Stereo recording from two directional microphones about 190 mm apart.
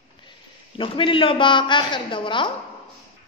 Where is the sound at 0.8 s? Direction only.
25° left (ahead or behind).